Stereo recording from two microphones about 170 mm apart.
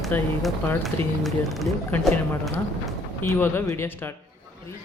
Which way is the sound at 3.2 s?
15° left (ahead or behind).